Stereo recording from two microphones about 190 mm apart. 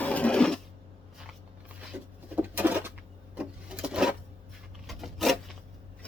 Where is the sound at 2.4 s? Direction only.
10° right (ahead or behind).